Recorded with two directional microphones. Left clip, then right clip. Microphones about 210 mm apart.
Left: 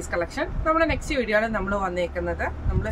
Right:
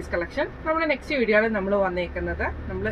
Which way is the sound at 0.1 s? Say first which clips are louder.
Even; 25° left (ahead or behind).